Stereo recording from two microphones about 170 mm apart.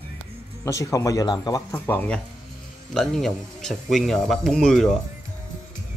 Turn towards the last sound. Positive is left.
turn(degrees=5)  # may be behind; listen again after turning